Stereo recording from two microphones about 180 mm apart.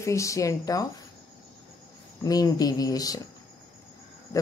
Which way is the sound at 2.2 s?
20° left (ahead or behind).